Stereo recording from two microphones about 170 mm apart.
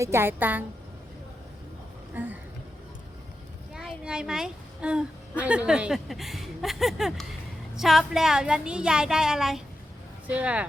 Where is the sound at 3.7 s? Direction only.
5° right (ahead or behind).